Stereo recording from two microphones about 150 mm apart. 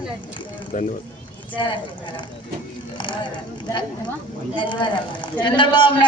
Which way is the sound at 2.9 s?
30° left (ahead or behind).